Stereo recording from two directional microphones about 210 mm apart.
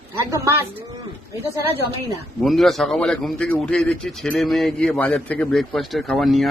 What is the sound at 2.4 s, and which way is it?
A man's voice, centre (ahead or behind).